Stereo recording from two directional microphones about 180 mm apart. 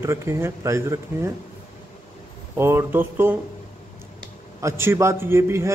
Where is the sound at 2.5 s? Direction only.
15° right (ahead or behind).